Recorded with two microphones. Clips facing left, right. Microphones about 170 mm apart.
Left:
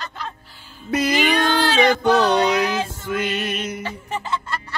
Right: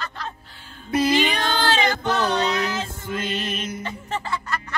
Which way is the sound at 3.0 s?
75° left (ahead or behind).